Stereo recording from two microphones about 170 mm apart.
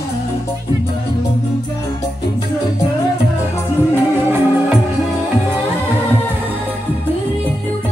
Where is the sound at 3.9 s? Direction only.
10° right (ahead or behind).